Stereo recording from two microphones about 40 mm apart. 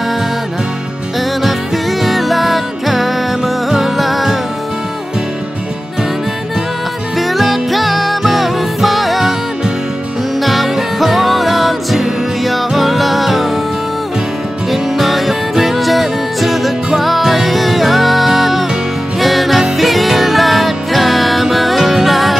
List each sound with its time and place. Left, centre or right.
2.0 s music: centre
7.2 s music: centre
10.4 s music: centre
14.7 s music: centre